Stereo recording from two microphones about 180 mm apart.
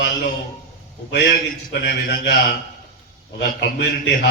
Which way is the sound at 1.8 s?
65° left (ahead or behind).